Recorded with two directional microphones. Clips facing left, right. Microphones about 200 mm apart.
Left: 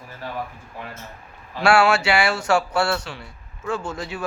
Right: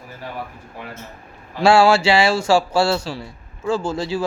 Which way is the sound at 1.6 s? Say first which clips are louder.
Right 4 dB; 25° right (ahead or behind).